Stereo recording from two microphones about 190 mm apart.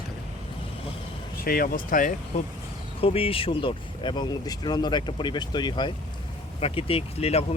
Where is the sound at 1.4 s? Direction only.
50° left (ahead or behind).